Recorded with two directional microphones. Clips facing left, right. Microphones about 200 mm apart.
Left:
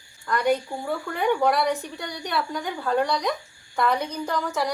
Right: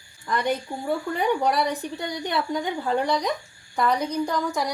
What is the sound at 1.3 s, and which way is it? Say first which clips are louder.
A woman's voice: left 3 dB; 20° right (ahead or behind).